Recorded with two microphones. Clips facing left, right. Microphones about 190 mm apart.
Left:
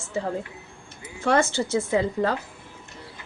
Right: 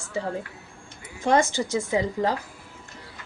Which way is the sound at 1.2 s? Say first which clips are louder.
Even; 15° right (ahead or behind).